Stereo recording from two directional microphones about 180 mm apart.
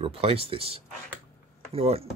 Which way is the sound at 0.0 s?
30° right (ahead or behind).